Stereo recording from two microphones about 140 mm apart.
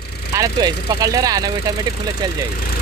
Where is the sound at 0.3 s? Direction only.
25° right (ahead or behind).